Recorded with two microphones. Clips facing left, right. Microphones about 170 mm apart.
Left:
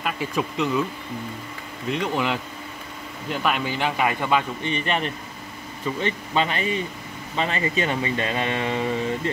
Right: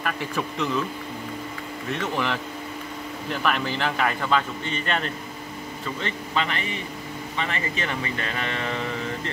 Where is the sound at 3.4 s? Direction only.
10° left (ahead or behind).